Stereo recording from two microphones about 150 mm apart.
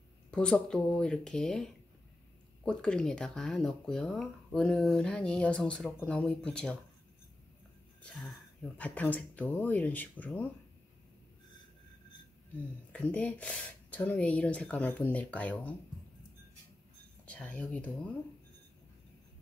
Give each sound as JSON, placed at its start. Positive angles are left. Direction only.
{"t": 0.3, "sound": "a woman's voice", "side_deg": 5}
{"t": 8.0, "sound": "a woman's voice", "side_deg": 0}
{"t": 12.5, "sound": "a woman's voice", "side_deg": 10}
{"t": 17.3, "sound": "a woman's voice", "side_deg": 10}